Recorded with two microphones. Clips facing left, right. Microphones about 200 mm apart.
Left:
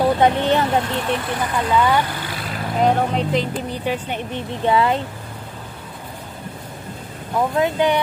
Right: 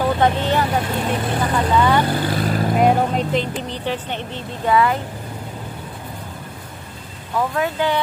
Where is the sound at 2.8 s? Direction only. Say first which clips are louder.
Even; 5° right (ahead or behind).